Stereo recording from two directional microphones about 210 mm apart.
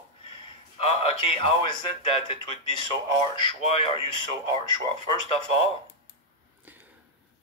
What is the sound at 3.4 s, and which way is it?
Speech, 25° left (ahead or behind).